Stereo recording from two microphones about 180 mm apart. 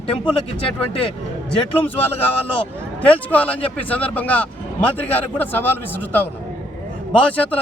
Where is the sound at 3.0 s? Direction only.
10° left (ahead or behind).